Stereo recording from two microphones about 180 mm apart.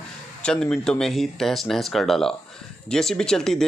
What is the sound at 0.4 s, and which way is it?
Speech, 5° left (ahead or behind).